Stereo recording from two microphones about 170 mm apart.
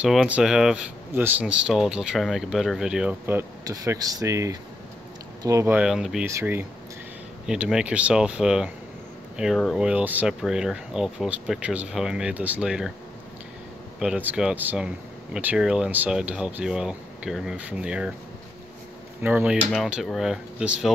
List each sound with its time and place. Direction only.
0.0 s speech: 5° right (ahead or behind)
5.8 s speech: 5° right (ahead or behind)
13.9 s speech: 5° right (ahead or behind)
19.2 s speech: 10° right (ahead or behind)